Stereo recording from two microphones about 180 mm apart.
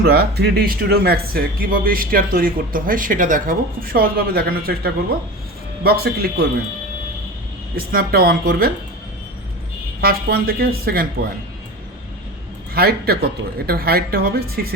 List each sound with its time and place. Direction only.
0.0 s speech: 60° right (ahead or behind)
7.8 s speech: 55° right (ahead or behind)
10.0 s speech: 55° right (ahead or behind)
12.7 s speech: 60° right (ahead or behind)